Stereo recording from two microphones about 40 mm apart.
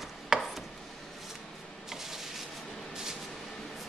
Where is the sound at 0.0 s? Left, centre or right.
Centre.